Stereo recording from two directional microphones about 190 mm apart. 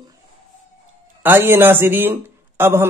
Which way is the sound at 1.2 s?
10° right (ahead or behind).